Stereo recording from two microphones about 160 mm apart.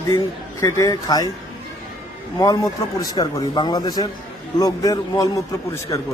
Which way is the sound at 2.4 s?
20° left (ahead or behind).